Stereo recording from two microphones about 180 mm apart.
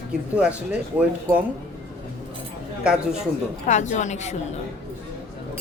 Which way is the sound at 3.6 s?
40° left (ahead or behind).